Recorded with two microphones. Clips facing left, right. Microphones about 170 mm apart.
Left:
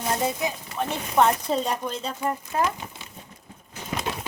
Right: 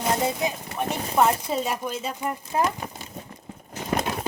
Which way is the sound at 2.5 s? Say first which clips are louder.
Right 2 dB; 20° right (ahead or behind).